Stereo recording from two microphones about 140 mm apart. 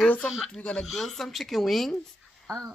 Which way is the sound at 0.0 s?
10° left (ahead or behind).